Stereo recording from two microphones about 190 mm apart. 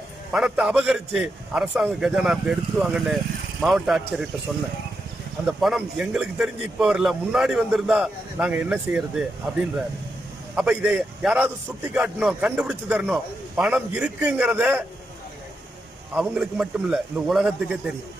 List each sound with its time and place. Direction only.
0.3 s a man's voice: 5° right (ahead or behind)
5.4 s a man's voice: centre (ahead or behind)
16.2 s a man's voice: 5° right (ahead or behind)